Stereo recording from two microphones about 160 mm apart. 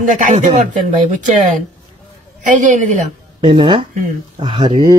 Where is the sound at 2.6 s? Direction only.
50° right (ahead or behind).